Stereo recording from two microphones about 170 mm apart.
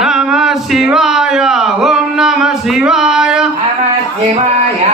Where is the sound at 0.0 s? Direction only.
5° right (ahead or behind).